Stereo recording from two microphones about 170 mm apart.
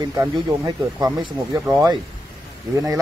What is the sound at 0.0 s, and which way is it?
Speech, 20° right (ahead or behind).